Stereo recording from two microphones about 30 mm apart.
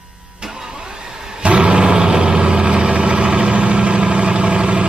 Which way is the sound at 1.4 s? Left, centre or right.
Right.